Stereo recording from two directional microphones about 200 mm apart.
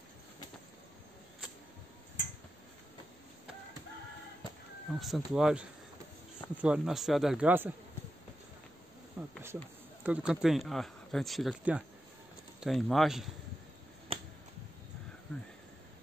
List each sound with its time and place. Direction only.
5.0 s speech: centre (ahead or behind)
9.2 s a sound: 5° right (ahead or behind)
10.0 s speech: 5° right (ahead or behind)
14.1 s finger snapping: 30° right (ahead or behind)